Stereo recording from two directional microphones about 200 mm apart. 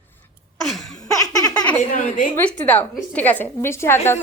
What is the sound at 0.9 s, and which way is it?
Baby laughter, 20° left (ahead or behind).